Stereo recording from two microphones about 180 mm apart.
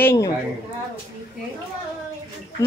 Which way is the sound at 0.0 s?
15° left (ahead or behind).